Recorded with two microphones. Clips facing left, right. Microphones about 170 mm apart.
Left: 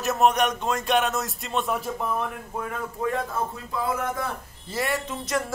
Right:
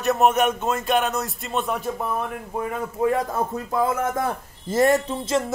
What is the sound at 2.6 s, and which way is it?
Speech, 10° right (ahead or behind).